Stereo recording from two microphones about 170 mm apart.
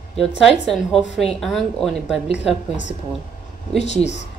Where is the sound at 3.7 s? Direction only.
40° left (ahead or behind).